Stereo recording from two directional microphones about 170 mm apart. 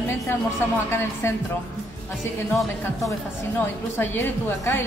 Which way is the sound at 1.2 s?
15° left (ahead or behind).